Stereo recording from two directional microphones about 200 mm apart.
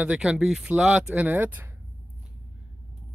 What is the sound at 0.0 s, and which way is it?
Speech, 5° right (ahead or behind).